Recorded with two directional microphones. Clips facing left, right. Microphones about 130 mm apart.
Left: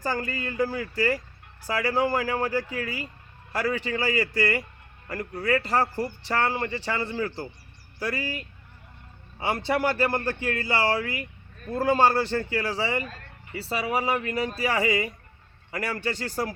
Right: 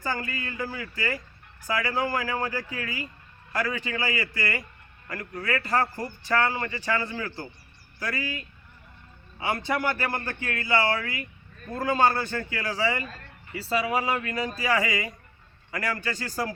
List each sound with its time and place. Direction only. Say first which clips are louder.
0.0 s a man's voice: left 2 dB; 35° left (ahead or behind)